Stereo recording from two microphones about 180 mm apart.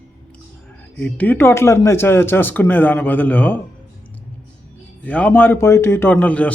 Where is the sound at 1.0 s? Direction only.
10° left (ahead or behind).